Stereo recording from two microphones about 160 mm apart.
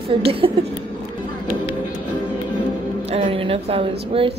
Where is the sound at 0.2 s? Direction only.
35° right (ahead or behind).